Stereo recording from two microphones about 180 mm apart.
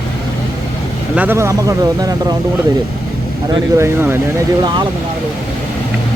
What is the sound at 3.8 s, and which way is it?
Speech, 15° right (ahead or behind).